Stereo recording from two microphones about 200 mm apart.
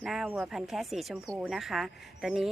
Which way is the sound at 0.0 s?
5° right (ahead or behind).